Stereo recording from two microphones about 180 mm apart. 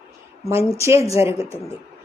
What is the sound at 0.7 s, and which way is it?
Speech, 15° right (ahead or behind).